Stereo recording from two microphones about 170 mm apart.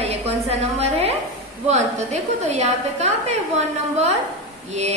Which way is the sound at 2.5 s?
40° right (ahead or behind).